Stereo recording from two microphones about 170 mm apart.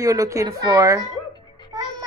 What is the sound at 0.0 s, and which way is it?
A woman's voice, 20° right (ahead or behind).